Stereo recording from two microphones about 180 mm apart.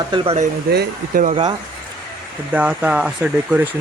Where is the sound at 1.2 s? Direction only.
40° right (ahead or behind).